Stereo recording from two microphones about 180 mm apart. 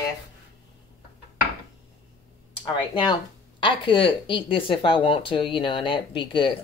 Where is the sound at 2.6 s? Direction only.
25° left (ahead or behind).